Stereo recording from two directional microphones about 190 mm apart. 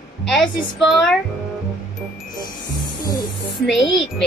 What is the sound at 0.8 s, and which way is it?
Speech, centre (ahead or behind).